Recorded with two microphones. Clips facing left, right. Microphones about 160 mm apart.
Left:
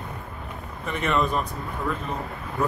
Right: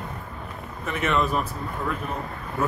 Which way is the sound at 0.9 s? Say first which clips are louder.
Even; centre (ahead or behind).